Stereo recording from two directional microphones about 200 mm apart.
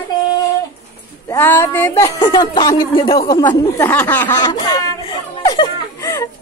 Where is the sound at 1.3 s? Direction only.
10° left (ahead or behind).